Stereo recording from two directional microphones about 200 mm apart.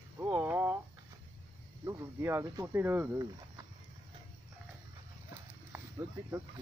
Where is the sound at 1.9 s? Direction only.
15° right (ahead or behind).